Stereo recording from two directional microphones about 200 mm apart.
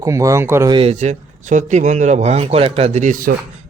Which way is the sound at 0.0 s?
15° right (ahead or behind).